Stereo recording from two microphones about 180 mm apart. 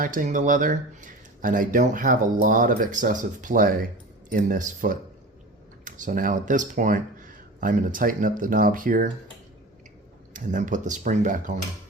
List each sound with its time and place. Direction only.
0.0 s speech: 45° right (ahead or behind)
10.3 s speech: 45° right (ahead or behind)